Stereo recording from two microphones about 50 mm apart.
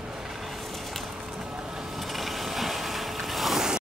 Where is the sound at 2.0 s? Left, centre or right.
Centre.